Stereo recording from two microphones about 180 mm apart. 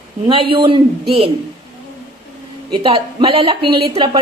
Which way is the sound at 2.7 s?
30° right (ahead or behind).